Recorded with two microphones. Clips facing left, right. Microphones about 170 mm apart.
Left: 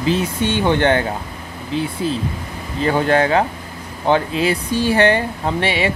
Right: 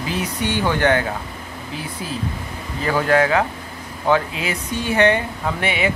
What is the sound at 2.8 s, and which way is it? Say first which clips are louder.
Speech: left 2 dB; 30° left (ahead or behind).